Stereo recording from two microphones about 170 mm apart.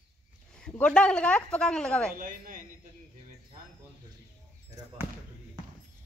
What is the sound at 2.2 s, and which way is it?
Speech, 50° right (ahead or behind).